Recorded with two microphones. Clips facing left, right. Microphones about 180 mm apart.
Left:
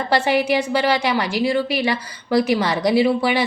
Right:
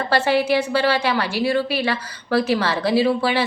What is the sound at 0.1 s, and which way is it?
A woman's voice, 15° left (ahead or behind).